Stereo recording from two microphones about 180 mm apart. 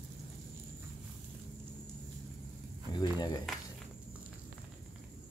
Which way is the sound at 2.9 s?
25° left (ahead or behind).